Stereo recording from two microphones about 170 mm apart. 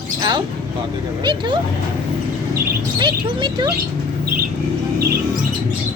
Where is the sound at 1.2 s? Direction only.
25° right (ahead or behind).